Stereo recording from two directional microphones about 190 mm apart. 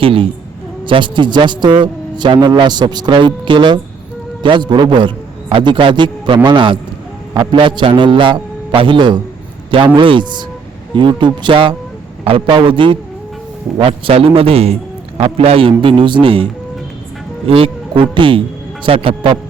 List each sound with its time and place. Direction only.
0.0 s a man's voice: 30° right (ahead or behind)